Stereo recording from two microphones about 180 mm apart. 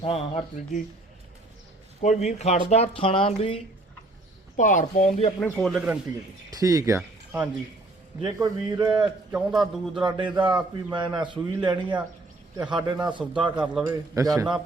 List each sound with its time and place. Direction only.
0.0 s speech: 30° left (ahead or behind)
2.0 s speech: 40° left (ahead or behind)
4.5 s speech: 45° left (ahead or behind)
5.4 s a man's voice: 5° left (ahead or behind)
6.5 s a man's voice: 20° right (ahead or behind)
8.2 s a man's voice: 20° right (ahead or behind)
9.3 s a man's voice: centre (ahead or behind)
10.0 s a man's voice: 25° right (ahead or behind)
12.6 s a man's voice: 5° right (ahead or behind)
13.1 s a man's voice: 25° right (ahead or behind)
13.6 s a man's voice: 10° right (ahead or behind)